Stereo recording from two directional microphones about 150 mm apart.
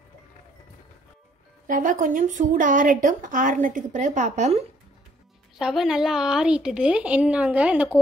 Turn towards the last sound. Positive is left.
turn(degrees=-10)  # may be behind; listen again after turning